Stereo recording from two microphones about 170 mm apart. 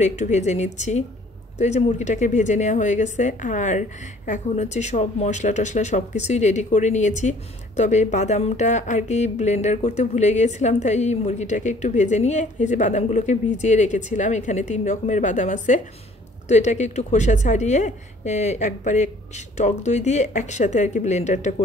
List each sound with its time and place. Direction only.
0.0 s speech: 45° left (ahead or behind)